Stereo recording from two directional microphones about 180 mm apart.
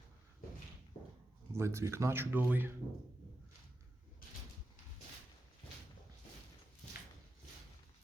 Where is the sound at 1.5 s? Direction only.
15° right (ahead or behind).